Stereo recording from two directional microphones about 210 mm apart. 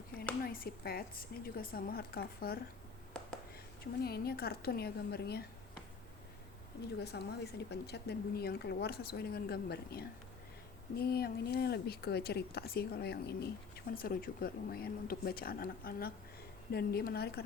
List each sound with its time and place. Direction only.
0.4 s speech: 45° left (ahead or behind)
4.0 s speech: 50° left (ahead or behind)
7.0 s speech: 50° left (ahead or behind)